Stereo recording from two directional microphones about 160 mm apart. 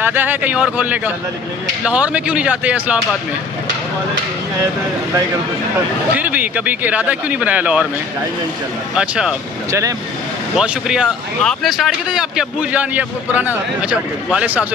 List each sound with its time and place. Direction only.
0.0 s speech: 10° right (ahead or behind)
6.1 s speech: 10° right (ahead or behind)
8.9 s speech: 5° right (ahead or behind)
9.7 s speech: 20° right (ahead or behind)
10.5 s speech: 5° right (ahead or behind)